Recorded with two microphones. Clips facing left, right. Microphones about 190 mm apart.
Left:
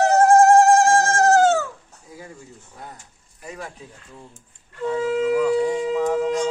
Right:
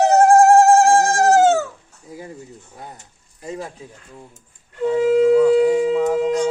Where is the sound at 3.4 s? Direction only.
25° right (ahead or behind).